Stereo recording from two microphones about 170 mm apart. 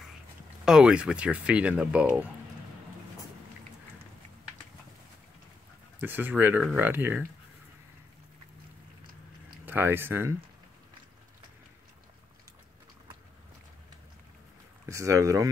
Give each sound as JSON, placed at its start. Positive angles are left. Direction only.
{"t": 0.7, "sound": "speech", "side_deg": -5}
{"t": 5.9, "sound": "speech", "side_deg": -10}
{"t": 9.7, "sound": "speech", "side_deg": -10}
{"t": 14.9, "sound": "speech", "side_deg": -20}